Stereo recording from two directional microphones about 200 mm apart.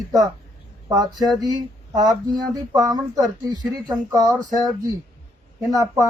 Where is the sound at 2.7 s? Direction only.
20° right (ahead or behind).